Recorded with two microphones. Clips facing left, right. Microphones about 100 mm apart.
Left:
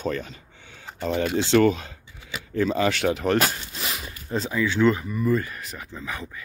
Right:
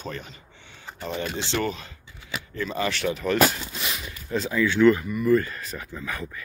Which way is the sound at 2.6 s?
90° left.